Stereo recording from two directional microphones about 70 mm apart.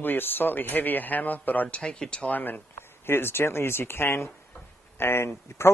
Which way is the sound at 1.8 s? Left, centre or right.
Centre.